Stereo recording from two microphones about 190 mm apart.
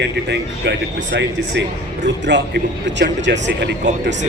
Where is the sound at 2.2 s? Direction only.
65° right (ahead or behind).